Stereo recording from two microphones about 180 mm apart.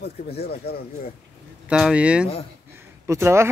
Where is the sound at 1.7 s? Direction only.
5° right (ahead or behind).